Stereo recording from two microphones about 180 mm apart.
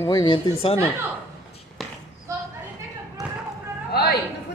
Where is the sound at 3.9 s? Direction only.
65° left (ahead or behind).